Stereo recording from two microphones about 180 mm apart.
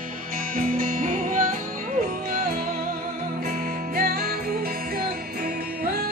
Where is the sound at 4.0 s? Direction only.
55° right (ahead or behind).